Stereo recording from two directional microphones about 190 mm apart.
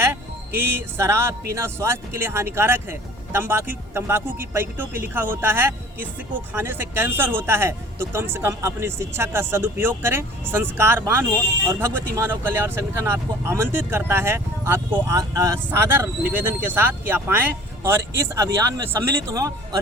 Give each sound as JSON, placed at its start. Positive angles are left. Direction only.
{"t": 0.0, "sound": "speech", "side_deg": -10}